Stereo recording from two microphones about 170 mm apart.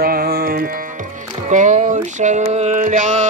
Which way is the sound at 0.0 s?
65° right (ahead or behind).